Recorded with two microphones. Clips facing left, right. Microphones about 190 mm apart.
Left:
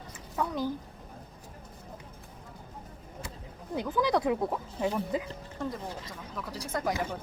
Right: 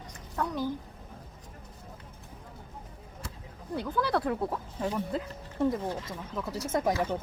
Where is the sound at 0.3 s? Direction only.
10° left (ahead or behind).